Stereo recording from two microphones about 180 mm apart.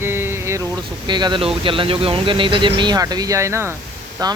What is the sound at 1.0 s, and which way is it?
Speech, 25° right (ahead or behind).